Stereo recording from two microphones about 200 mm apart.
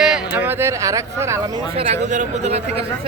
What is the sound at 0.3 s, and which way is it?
Speech, 10° right (ahead or behind).